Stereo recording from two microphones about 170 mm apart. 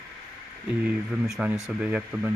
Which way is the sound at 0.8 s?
5° right (ahead or behind).